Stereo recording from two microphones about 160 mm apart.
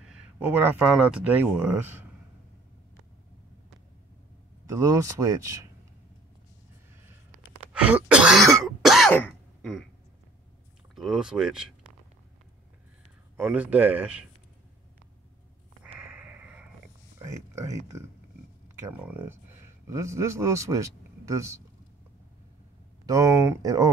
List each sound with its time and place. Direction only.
0.0 s a sound: 5° right (ahead or behind)
0.9 s speech: 5° right (ahead or behind)
4.6 s speech: 20° right (ahead or behind)
7.7 s cough: 5° right (ahead or behind)
9.1 s throat clearing: 5° left (ahead or behind)
11.0 s speech: 5° right (ahead or behind)
13.4 s speech: 5° right (ahead or behind)
16.0 s a sound: 10° right (ahead or behind)
17.2 s a man's voice: 20° right (ahead or behind)
23.0 s speech: 20° right (ahead or behind)